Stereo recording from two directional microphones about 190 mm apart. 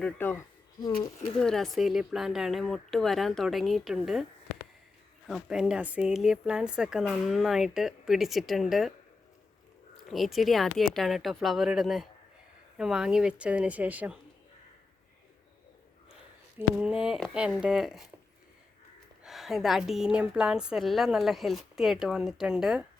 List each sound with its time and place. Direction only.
0.0 s speech: 10° left (ahead or behind)
1.4 s a woman's voice: centre (ahead or behind)
5.3 s a woman's voice: 5° right (ahead or behind)
10.1 s a woman's voice: centre (ahead or behind)
16.6 s a woman's voice: 5° right (ahead or behind)
19.2 s a woman's voice: centre (ahead or behind)